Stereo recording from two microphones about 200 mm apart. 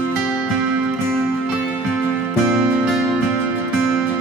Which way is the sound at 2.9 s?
Centre (ahead or behind).